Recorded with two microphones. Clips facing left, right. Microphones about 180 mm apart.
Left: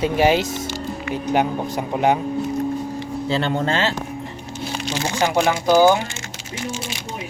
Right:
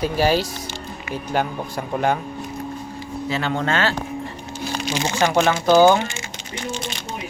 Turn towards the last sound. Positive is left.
turn(degrees=5)  # may be behind; listen again after turning